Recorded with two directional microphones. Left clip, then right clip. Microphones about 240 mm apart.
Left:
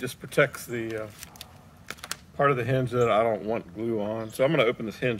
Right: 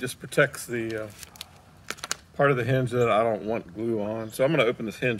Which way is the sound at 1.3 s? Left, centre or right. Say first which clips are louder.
Right 2 dB; centre.